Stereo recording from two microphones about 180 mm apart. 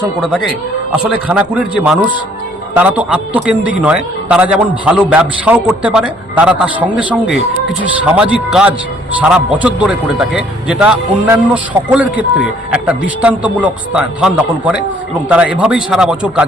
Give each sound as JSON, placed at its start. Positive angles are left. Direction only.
{"t": 0.2, "sound": "a man's voice", "side_deg": 0}